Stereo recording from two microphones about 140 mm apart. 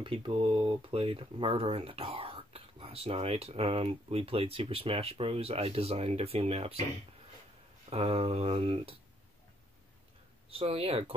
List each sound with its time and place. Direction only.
0.0 s speech: 40° right (ahead or behind)
7.9 s speech: 45° right (ahead or behind)
10.5 s speech: 40° right (ahead or behind)